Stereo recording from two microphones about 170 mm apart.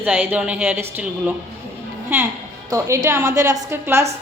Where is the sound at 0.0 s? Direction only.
10° right (ahead or behind).